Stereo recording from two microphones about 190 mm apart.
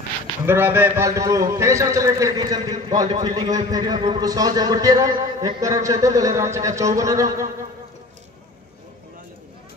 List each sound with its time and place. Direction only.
0.5 s a man's voice: 10° right (ahead or behind)